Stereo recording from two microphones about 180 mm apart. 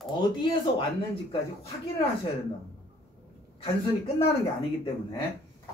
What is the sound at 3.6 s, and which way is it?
Speech, 30° left (ahead or behind).